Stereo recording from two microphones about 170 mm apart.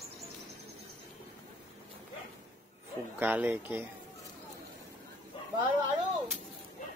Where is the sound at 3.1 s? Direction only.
10° right (ahead or behind).